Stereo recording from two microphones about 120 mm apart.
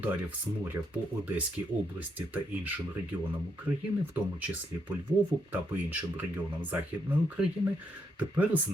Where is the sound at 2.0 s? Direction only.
15° right (ahead or behind).